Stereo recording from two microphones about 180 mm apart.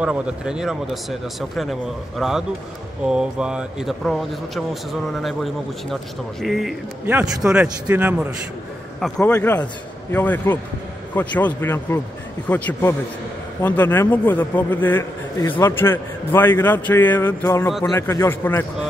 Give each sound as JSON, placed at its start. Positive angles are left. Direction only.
{"t": 0.0, "sound": "a man's voice", "side_deg": -5}
{"t": 9.0, "sound": "a man's voice", "side_deg": 10}